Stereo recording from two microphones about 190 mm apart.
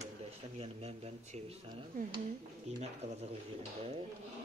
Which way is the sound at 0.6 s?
30° right (ahead or behind).